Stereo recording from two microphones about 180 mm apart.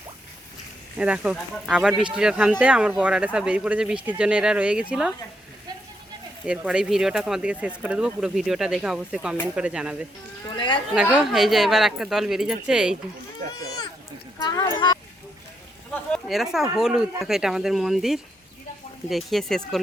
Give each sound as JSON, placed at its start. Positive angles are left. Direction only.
{"t": 0.9, "sound": "speech", "side_deg": -5}
{"t": 6.4, "sound": "speech", "side_deg": -5}
{"t": 10.5, "sound": "speech", "side_deg": 25}
{"t": 10.9, "sound": "speech", "side_deg": -5}
{"t": 14.4, "sound": "speech", "side_deg": 20}
{"t": 16.1, "sound": "speech", "side_deg": 0}